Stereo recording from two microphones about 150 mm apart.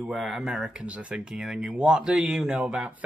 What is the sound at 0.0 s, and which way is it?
Speech, centre (ahead or behind).